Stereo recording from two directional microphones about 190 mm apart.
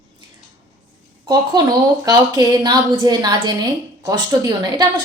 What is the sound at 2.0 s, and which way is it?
A woman's voice, 20° right (ahead or behind).